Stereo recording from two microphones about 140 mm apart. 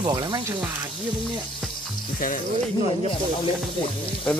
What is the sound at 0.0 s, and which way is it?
Speech, 30° right (ahead or behind).